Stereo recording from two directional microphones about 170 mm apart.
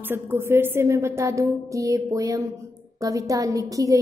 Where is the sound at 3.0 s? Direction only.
20° right (ahead or behind).